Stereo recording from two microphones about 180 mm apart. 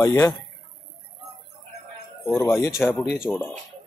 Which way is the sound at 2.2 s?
15° left (ahead or behind).